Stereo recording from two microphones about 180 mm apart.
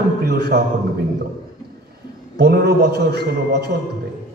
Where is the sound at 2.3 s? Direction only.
65° right (ahead or behind).